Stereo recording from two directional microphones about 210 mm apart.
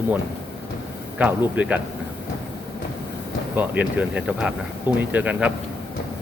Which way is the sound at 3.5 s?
10° right (ahead or behind).